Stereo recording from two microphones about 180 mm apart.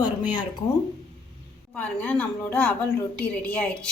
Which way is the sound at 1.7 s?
10° left (ahead or behind).